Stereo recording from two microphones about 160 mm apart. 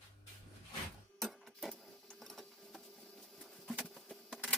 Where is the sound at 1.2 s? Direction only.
Centre (ahead or behind).